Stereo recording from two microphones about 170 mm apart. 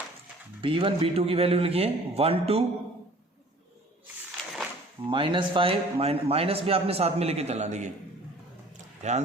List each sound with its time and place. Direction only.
0.6 s a man's voice: 30° right (ahead or behind)
5.0 s a man's voice: 30° right (ahead or behind)
9.0 s speech: 45° right (ahead or behind)